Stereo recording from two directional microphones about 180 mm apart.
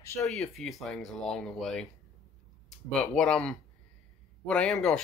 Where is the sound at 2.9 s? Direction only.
5° left (ahead or behind).